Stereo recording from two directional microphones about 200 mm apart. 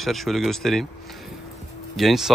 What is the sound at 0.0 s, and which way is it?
Speech, centre (ahead or behind).